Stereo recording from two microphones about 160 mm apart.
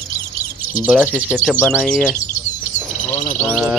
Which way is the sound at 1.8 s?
5° left (ahead or behind).